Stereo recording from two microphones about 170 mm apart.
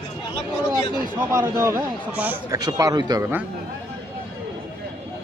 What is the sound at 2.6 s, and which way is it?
Speech, 20° right (ahead or behind).